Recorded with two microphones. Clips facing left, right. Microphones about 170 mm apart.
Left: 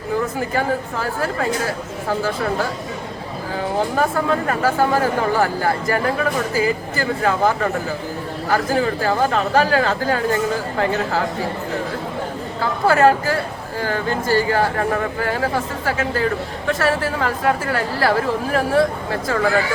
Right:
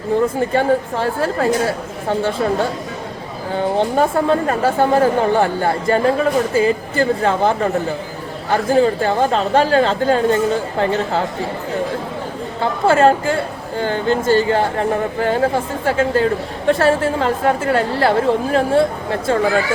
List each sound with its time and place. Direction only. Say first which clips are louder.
0.3 s speech: right 5 dB; 30° right (ahead or behind)
12.8 s speech: right 2 dB; 25° right (ahead or behind)